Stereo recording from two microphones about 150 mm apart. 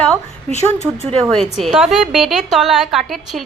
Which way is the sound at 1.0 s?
45° right (ahead or behind).